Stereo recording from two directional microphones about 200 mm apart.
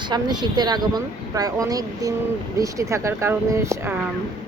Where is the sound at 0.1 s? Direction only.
20° right (ahead or behind).